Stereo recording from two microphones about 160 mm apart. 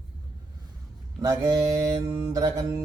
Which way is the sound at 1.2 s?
25° right (ahead or behind).